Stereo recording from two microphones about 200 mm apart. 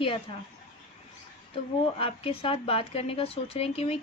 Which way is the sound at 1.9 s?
30° left (ahead or behind).